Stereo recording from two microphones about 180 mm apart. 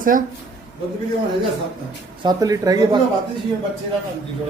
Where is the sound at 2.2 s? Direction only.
20° right (ahead or behind).